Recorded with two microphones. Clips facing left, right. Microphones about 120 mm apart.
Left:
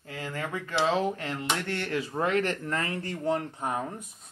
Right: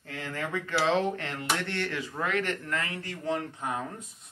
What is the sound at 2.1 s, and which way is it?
Speech, 30° left (ahead or behind).